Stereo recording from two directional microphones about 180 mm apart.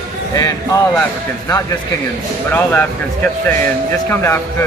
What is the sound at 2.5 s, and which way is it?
Speech, 10° left (ahead or behind).